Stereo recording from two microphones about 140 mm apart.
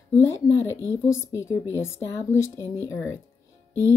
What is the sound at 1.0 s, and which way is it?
Speech, 20° left (ahead or behind).